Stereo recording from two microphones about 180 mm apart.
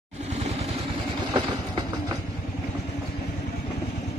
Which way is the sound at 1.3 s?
20° right (ahead or behind).